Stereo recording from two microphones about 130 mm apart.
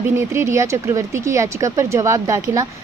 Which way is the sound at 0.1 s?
20° right (ahead or behind).